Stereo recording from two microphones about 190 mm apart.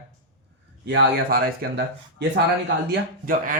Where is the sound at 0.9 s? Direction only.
60° right (ahead or behind).